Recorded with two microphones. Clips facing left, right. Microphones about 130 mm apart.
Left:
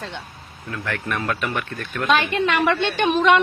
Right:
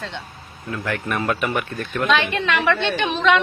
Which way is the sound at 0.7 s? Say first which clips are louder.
Right 2 dB; 10° right (ahead or behind).